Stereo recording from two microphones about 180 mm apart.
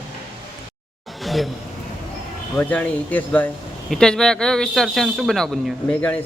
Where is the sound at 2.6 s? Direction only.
10° left (ahead or behind).